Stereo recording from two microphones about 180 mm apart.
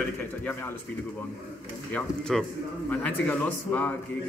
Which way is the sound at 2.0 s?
5° left (ahead or behind).